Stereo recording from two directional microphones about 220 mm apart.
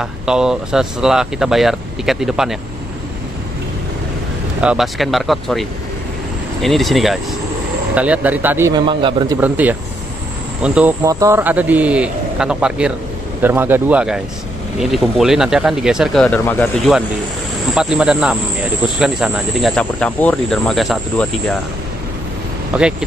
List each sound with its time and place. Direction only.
0.0 s speech: 5° right (ahead or behind)
4.6 s speech: 5° right (ahead or behind); by 9.4 s 20° right (ahead or behind)
9.4 s speech: 5° right (ahead or behind)
22.8 s speech: 5° right (ahead or behind)